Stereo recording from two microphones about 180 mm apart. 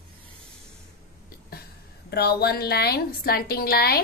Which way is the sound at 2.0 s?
65° left (ahead or behind).